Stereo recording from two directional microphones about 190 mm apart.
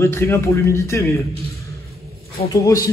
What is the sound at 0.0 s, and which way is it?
Speech, 15° left (ahead or behind).